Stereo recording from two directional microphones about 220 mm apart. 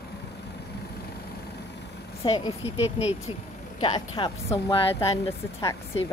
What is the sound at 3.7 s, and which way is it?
Speech, 20° left (ahead or behind).